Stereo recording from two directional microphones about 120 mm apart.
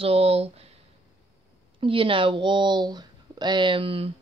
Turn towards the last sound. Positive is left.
turn(degrees=-50)  # may be behind; listen again after turning